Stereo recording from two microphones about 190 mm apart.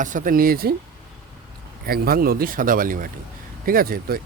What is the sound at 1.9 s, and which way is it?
Speech, 50° right (ahead or behind).